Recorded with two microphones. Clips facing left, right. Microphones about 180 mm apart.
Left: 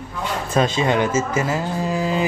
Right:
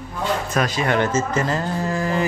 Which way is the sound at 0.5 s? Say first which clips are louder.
Left 4 dB; 25° left (ahead or behind).